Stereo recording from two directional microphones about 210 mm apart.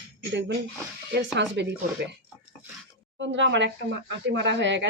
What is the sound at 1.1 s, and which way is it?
Speech, 55° right (ahead or behind).